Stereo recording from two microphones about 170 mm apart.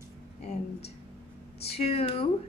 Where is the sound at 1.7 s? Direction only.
35° left (ahead or behind).